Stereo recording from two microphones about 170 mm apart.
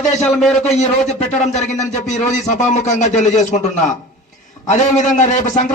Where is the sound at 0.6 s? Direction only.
40° left (ahead or behind).